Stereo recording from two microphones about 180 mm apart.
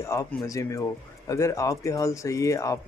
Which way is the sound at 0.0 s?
15° left (ahead or behind).